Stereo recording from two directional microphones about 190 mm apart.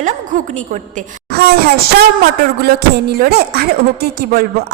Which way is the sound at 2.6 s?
55° right (ahead or behind).